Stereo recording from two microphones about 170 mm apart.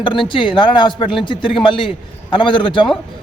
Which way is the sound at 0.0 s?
30° left (ahead or behind).